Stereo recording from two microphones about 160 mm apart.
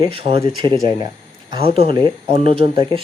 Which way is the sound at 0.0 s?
35° right (ahead or behind).